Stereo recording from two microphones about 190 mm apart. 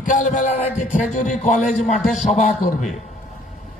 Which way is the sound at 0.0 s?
45° left (ahead or behind).